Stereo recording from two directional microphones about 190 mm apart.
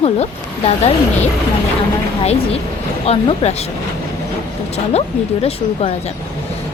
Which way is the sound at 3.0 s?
30° left (ahead or behind).